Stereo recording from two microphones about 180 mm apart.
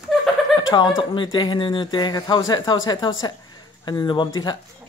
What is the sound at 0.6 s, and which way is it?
Speech, 25° left (ahead or behind).